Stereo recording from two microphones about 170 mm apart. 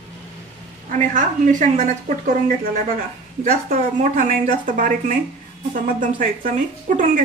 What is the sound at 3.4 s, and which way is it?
A woman's voice, 50° right (ahead or behind).